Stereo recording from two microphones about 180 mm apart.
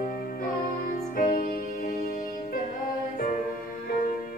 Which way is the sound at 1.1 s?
50° left (ahead or behind).